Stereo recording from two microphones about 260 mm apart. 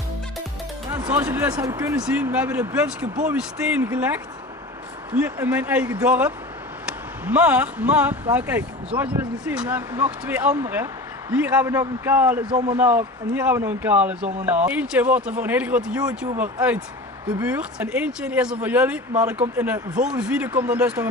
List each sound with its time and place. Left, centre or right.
0.9 s speech: centre
12.4 s speech: centre
12.7 s speech: centre